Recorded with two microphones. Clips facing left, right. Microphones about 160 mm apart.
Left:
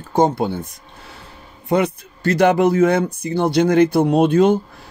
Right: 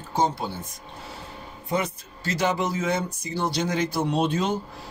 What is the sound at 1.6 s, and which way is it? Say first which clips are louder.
Speech: left 9 dB; 65° left (ahead or behind).